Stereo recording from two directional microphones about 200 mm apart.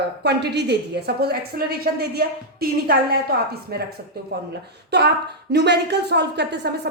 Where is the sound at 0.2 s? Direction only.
55° right (ahead or behind).